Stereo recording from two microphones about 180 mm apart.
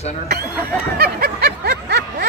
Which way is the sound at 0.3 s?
60° right (ahead or behind).